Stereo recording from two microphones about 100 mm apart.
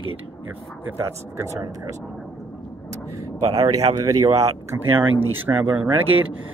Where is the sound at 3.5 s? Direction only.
35° right (ahead or behind).